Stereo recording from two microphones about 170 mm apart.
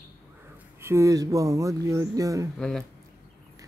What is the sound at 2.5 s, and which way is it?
Speech, 5° left (ahead or behind).